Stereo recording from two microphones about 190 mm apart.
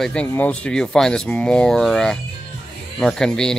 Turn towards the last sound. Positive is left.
turn(degrees=5)  # may be behind; listen again after turning